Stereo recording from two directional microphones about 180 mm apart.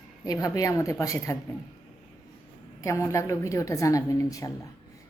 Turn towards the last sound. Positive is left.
turn(degrees=20)  # may be behind; listen again after turning